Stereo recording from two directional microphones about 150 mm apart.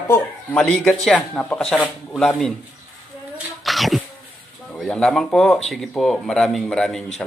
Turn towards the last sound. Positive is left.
turn(degrees=5)  # may be behind; listen again after turning